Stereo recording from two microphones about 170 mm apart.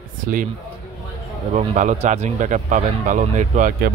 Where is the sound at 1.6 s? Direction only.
40° right (ahead or behind).